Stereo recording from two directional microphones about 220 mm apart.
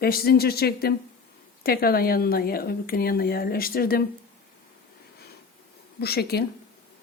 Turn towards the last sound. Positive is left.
turn(degrees=45)  # may be behind; listen again after turning